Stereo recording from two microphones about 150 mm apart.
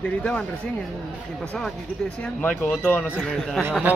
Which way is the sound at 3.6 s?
10° right (ahead or behind).